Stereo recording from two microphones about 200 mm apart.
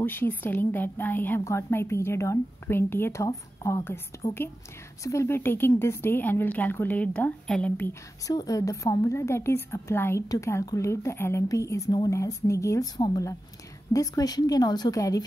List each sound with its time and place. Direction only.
0.0 s a woman's voice: 10° left (ahead or behind)